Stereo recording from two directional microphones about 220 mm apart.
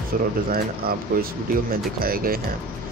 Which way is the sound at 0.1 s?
40° right (ahead or behind).